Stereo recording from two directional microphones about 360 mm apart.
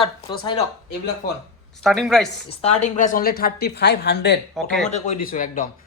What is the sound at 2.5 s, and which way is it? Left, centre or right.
A woman's voice, centre.